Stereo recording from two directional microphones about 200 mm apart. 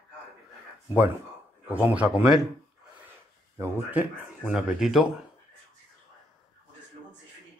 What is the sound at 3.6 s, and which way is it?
Speech, 10° right (ahead or behind).